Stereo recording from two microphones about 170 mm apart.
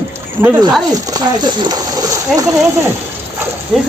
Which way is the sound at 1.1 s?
25° right (ahead or behind).